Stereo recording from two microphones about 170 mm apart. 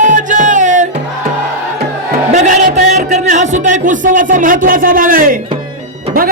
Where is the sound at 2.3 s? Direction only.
45° right (ahead or behind).